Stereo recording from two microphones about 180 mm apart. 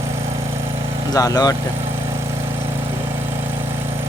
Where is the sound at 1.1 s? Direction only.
20° left (ahead or behind).